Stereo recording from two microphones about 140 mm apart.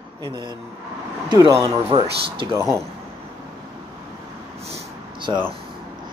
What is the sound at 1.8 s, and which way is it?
Speech, 40° right (ahead or behind).